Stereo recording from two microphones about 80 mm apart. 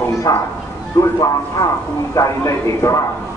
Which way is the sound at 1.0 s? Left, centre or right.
Left.